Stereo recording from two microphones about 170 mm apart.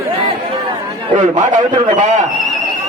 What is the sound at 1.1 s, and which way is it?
Speech, 45° right (ahead or behind).